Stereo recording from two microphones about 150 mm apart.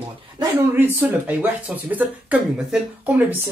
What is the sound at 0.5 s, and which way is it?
Speech, 10° right (ahead or behind).